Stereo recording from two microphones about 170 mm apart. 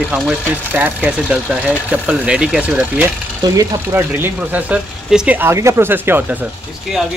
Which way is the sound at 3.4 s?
15° right (ahead or behind).